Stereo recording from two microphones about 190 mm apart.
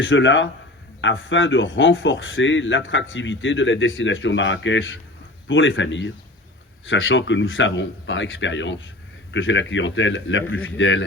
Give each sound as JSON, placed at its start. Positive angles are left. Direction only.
{"t": 0.0, "sound": "speech", "side_deg": 80}